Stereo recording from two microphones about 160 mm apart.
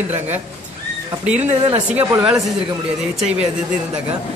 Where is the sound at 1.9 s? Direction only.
10° right (ahead or behind).